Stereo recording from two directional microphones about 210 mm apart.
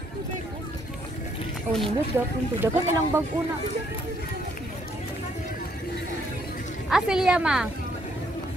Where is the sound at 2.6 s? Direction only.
15° right (ahead or behind).